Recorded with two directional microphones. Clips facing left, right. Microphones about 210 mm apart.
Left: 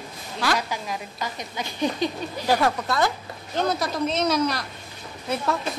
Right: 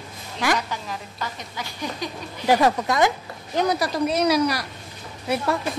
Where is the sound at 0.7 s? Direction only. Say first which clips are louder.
Left 1 dB; 15° left (ahead or behind).